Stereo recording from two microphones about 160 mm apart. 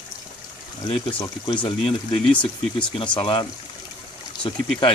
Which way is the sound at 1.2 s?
30° left (ahead or behind).